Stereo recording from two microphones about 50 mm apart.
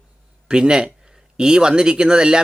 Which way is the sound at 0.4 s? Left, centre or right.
Centre.